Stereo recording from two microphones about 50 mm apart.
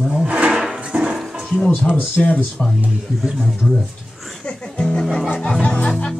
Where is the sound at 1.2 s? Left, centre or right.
Centre.